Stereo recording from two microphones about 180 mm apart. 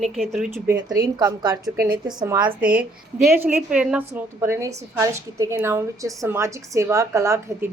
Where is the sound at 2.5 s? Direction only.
50° right (ahead or behind).